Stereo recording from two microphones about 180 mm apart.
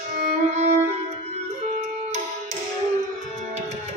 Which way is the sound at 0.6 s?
40° right (ahead or behind).